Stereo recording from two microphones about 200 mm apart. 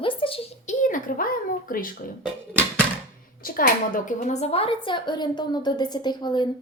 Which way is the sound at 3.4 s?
45° left (ahead or behind).